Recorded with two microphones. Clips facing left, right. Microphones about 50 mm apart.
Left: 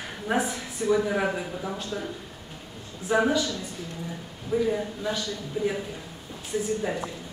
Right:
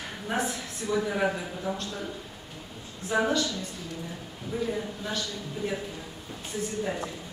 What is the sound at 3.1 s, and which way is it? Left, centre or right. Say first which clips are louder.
Speech: left 3 dB; centre.